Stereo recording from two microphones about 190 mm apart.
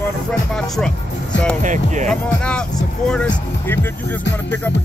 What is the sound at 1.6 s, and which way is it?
Speech, 40° right (ahead or behind).